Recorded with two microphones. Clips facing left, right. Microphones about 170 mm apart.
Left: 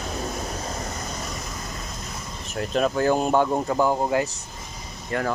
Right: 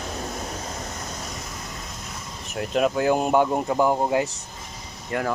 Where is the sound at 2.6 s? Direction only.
10° right (ahead or behind).